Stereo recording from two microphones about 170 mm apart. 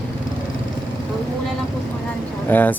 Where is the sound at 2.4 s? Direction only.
10° left (ahead or behind).